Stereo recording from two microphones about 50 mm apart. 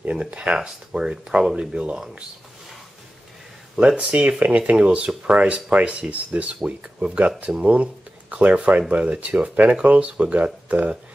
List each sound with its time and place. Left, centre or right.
0.2 s speech: centre
3.7 s speech: right